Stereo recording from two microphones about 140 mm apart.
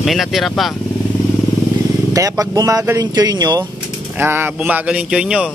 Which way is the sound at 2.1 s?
25° right (ahead or behind).